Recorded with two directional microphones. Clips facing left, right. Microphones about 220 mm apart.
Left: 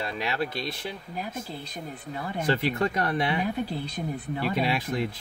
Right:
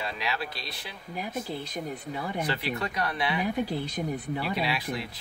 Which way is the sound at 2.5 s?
50° left (ahead or behind).